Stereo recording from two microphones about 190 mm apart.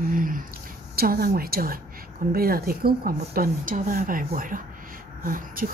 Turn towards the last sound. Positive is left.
turn(degrees=-45)  # may be behind; listen again after turning